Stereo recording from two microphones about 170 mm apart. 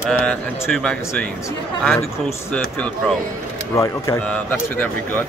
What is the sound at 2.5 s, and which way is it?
Speech, 5° left (ahead or behind).